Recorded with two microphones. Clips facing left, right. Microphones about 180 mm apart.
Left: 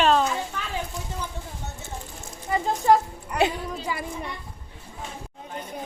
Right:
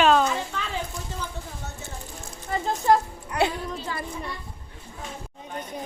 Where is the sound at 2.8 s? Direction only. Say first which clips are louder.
Left 1 dB; 10° left (ahead or behind).